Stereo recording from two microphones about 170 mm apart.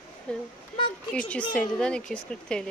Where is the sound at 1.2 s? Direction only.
5° left (ahead or behind).